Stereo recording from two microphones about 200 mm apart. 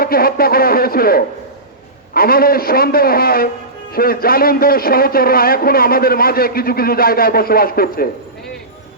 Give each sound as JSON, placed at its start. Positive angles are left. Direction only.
{"t": 0.0, "sound": "a man's voice", "side_deg": 50}